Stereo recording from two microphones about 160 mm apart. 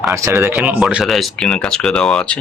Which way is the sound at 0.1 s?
20° right (ahead or behind).